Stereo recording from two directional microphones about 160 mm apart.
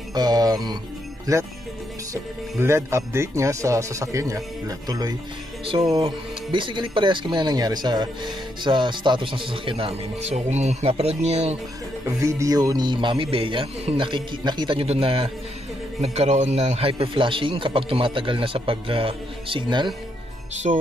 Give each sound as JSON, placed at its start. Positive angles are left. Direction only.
{"t": 0.1, "sound": "speech", "side_deg": -25}
{"t": 2.6, "sound": "speech", "side_deg": -15}
{"t": 5.9, "sound": "speech", "side_deg": -35}
{"t": 12.2, "sound": "speech", "side_deg": -20}